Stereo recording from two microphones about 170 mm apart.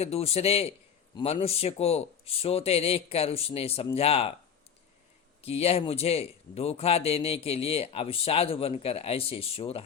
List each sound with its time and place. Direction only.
0.0 s a man's voice: 35° left (ahead or behind)
5.4 s a man's voice: 35° left (ahead or behind)